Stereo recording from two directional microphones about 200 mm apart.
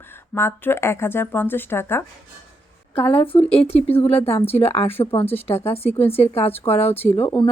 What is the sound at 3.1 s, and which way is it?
Speech, 25° left (ahead or behind).